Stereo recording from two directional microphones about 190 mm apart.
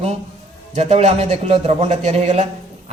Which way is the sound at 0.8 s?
35° right (ahead or behind).